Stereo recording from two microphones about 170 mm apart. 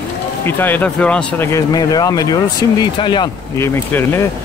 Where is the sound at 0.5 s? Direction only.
10° left (ahead or behind).